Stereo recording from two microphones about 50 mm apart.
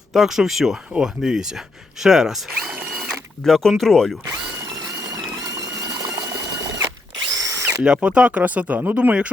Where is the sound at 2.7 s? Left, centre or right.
Right.